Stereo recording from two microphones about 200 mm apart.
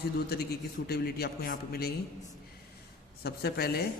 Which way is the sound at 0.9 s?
50° left (ahead or behind).